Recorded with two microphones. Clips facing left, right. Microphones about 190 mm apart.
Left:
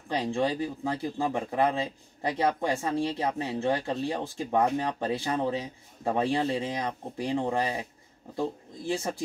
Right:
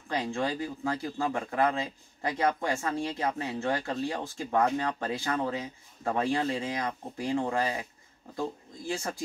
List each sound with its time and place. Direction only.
0.1 s speech: 20° left (ahead or behind)
2.8 s speech: 15° left (ahead or behind)